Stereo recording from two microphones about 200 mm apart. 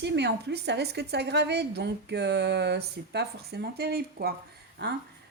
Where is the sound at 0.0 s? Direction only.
55° right (ahead or behind).